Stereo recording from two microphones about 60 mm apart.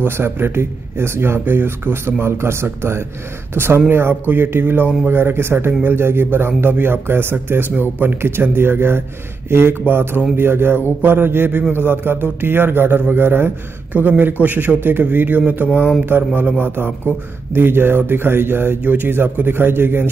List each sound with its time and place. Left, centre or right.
0.0 s a man's voice: right